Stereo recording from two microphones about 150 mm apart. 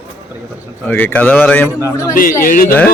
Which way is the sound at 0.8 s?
10° left (ahead or behind).